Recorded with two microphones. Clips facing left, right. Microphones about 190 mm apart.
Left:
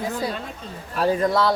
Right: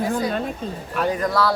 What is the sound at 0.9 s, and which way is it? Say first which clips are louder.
Speech: left 2 dB; 30° left (ahead or behind).